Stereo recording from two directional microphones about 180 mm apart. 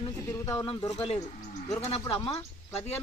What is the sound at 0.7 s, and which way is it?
Speech, 35° left (ahead or behind).